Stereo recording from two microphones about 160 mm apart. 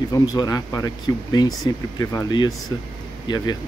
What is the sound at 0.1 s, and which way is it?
Speech, 25° left (ahead or behind).